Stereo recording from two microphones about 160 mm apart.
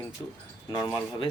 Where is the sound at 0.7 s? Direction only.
25° left (ahead or behind).